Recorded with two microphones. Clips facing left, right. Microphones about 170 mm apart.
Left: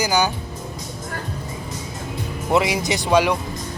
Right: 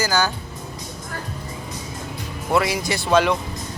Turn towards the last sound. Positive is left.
turn(degrees=10)  # may be behind; listen again after turning